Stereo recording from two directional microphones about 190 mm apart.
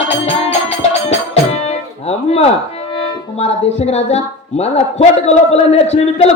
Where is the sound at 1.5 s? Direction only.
35° left (ahead or behind).